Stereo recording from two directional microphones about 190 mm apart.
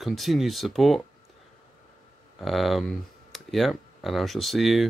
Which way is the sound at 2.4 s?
Centre (ahead or behind).